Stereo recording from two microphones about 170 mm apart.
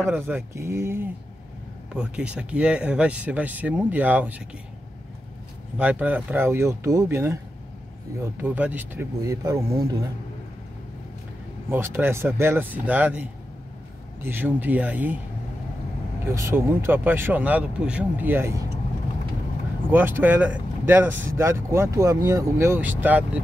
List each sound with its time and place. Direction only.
0.0 s speech: 15° right (ahead or behind)
5.8 s speech: 10° right (ahead or behind)
11.7 s speech: 15° right (ahead or behind)
16.3 s speech: 15° right (ahead or behind)
19.9 s speech: 10° right (ahead or behind)